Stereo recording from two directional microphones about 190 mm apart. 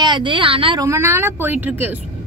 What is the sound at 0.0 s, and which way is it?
Speech, 25° right (ahead or behind).